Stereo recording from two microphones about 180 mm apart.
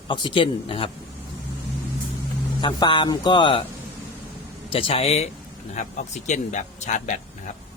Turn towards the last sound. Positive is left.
turn(degrees=40)  # may be behind; listen again after turning